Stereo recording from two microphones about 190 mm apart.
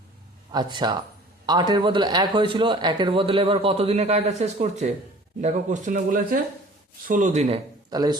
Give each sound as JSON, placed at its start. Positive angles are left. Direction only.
{"t": 0.5, "sound": "a man's voice", "side_deg": -25}
{"t": 7.9, "sound": "speech", "side_deg": -20}